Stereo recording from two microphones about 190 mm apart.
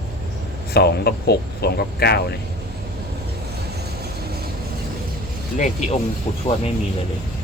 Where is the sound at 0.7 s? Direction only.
55° left (ahead or behind).